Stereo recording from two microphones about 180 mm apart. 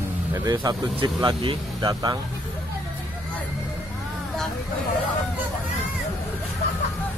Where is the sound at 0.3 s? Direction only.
20° right (ahead or behind).